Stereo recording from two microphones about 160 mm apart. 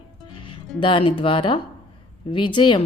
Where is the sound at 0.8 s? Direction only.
30° left (ahead or behind).